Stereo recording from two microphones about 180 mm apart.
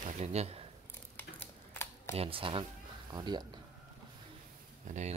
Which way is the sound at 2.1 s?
30° right (ahead or behind).